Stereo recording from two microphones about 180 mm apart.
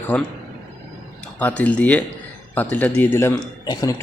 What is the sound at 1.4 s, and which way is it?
A man's voice, 10° left (ahead or behind).